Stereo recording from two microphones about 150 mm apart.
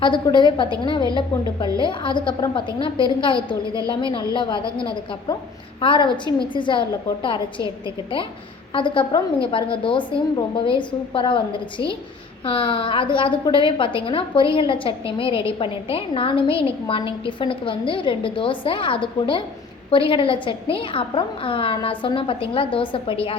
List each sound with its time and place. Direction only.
0.0 s a woman's voice: 30° left (ahead or behind)
8.7 s a woman's voice: 35° left (ahead or behind)